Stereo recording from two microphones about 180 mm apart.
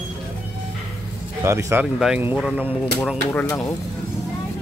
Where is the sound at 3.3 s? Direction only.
10° left (ahead or behind).